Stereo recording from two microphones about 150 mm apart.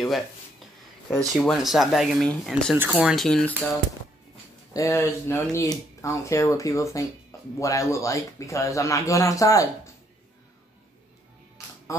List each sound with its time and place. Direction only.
1.1 s speech: 5° left (ahead or behind)
4.7 s speech: 20° left (ahead or behind)